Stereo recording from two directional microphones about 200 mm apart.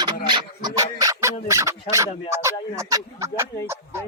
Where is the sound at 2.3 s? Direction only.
15° right (ahead or behind).